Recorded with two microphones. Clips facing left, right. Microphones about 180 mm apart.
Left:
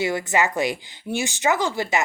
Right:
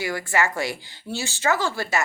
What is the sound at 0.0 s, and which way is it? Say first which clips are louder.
Speech: left 3 dB; 20° left (ahead or behind).